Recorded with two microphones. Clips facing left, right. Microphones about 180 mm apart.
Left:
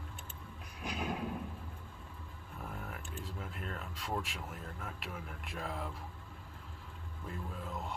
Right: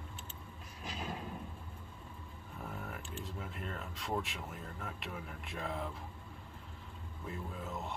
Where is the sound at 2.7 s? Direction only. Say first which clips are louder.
Right 2 dB; centre (ahead or behind).